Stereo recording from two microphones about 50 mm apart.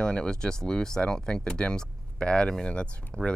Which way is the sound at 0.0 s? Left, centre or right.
Centre.